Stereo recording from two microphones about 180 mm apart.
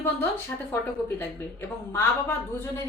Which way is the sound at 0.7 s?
10° left (ahead or behind).